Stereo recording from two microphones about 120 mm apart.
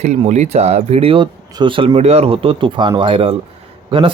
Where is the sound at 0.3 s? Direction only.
70° right (ahead or behind); by 2.0 s 45° right (ahead or behind).